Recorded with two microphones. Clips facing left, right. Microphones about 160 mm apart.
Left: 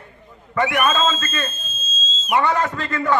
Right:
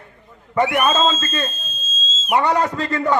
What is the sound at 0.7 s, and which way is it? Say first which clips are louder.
Speech: even; 40° right (ahead or behind).